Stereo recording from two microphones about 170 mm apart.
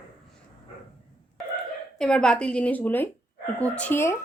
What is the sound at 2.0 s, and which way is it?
A woman's voice, 5° left (ahead or behind).